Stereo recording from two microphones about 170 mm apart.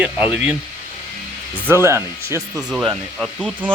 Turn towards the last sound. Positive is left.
turn(degrees=-5)  # may be behind; listen again after turning